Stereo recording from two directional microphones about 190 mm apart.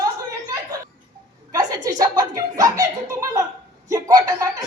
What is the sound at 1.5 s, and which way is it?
Speech, 20° right (ahead or behind).